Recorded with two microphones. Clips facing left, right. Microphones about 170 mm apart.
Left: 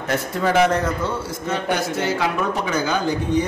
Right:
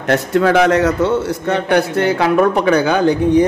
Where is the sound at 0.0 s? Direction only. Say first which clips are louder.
Right 8 dB; 75° right (ahead or behind).